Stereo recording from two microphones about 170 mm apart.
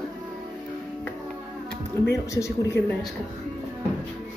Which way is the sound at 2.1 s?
15° left (ahead or behind).